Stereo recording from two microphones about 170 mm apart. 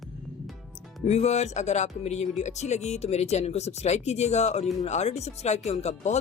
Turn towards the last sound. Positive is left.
turn(degrees=40)  # may be behind; listen again after turning